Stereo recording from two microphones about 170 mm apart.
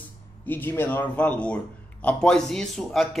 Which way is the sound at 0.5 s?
10° left (ahead or behind).